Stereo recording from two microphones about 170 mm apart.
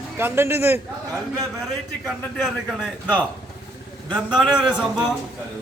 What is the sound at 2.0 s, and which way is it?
A man's voice, centre (ahead or behind).